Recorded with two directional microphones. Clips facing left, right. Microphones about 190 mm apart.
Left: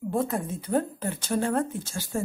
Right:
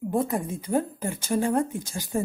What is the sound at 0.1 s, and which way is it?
A woman's voice, 15° right (ahead or behind).